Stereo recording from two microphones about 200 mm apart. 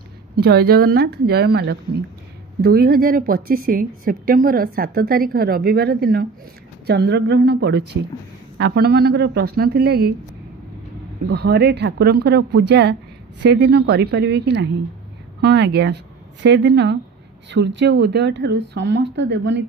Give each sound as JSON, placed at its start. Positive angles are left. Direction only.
{"t": 0.4, "sound": "a woman's voice", "side_deg": -55}
{"t": 11.2, "sound": "speech", "side_deg": -55}